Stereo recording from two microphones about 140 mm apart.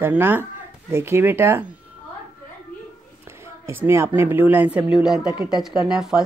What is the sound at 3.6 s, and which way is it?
Speech, 15° right (ahead or behind).